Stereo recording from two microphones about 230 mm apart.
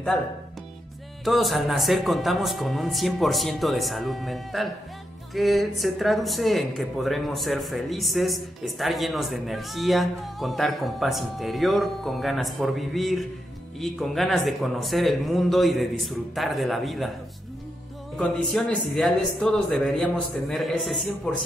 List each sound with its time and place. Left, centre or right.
1.2 s speech: centre
18.1 s speech: centre